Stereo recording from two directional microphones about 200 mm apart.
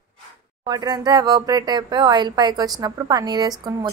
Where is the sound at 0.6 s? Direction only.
20° right (ahead or behind).